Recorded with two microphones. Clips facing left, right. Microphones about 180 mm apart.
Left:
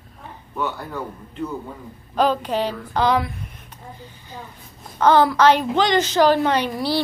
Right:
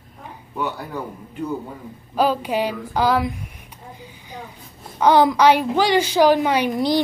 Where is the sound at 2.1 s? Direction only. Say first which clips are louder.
Even; 10° right (ahead or behind).